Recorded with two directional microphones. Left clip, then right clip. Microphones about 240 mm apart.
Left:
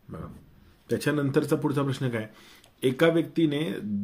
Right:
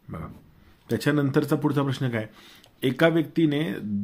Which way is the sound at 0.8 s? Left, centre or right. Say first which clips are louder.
Right 2 dB; right.